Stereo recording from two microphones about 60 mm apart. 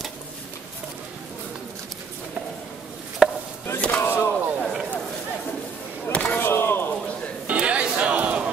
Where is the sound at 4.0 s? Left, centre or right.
Left.